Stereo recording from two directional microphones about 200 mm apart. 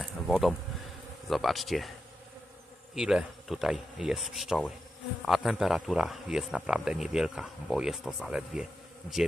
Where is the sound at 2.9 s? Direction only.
Centre (ahead or behind).